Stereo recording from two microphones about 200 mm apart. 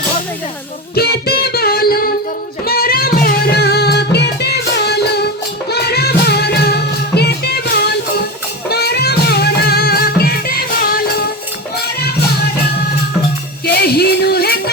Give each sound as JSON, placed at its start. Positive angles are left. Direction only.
{"t": 0.9, "sound": "music", "side_deg": 50}
{"t": 13.7, "sound": "music", "side_deg": 55}